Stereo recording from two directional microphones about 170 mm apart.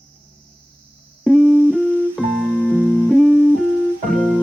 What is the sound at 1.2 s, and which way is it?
Music, centre (ahead or behind).